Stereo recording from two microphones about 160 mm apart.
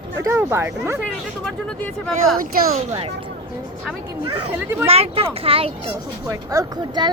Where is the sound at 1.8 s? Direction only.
5° left (ahead or behind).